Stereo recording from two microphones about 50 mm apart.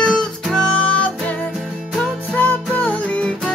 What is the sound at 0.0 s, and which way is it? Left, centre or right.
Music, centre.